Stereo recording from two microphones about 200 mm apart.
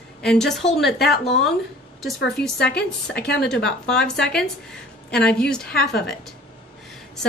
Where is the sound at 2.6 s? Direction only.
55° left (ahead or behind).